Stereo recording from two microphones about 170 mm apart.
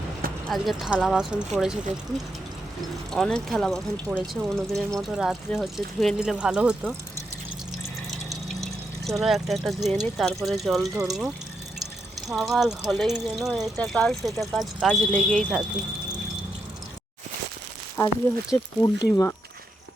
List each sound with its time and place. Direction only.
0.4 s speech: centre (ahead or behind)
3.1 s speech: 5° left (ahead or behind)
8.3 s speech: centre (ahead or behind)
12.3 s speech: centre (ahead or behind)
18.0 s speech: 15° left (ahead or behind)